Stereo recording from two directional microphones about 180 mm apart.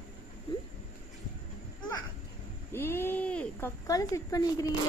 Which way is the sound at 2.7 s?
15° left (ahead or behind).